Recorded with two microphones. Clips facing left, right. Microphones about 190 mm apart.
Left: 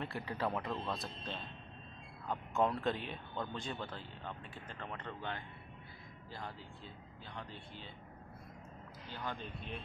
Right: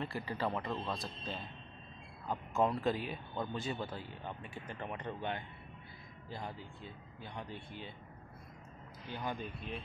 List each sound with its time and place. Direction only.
0.0 s speech: centre (ahead or behind)
9.1 s speech: 10° right (ahead or behind)